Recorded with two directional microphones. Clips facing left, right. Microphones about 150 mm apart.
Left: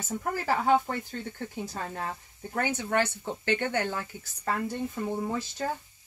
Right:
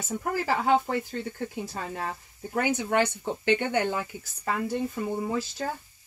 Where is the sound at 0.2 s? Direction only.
5° right (ahead or behind).